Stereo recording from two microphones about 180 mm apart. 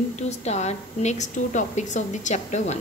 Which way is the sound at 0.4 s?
40° left (ahead or behind).